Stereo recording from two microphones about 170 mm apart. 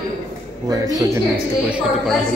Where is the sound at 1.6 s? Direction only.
5° right (ahead or behind).